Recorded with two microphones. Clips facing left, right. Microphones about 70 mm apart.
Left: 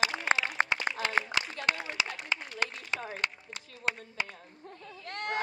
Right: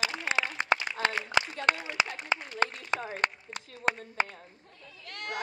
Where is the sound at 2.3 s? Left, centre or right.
Right.